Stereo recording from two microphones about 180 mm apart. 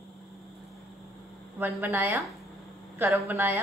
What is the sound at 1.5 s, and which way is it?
A woman's voice, 10° right (ahead or behind).